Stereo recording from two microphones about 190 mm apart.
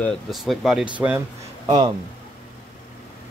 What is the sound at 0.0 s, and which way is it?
Speech, centre (ahead or behind).